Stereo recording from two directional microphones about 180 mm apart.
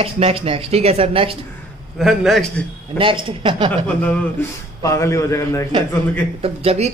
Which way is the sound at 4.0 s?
10° left (ahead or behind).